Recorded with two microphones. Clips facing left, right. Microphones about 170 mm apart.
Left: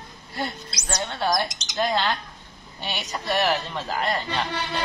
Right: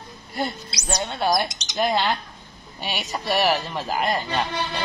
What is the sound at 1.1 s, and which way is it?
Speech, 15° right (ahead or behind).